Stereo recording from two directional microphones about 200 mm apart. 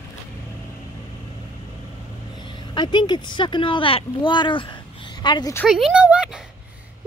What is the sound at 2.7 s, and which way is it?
Speech, 20° left (ahead or behind).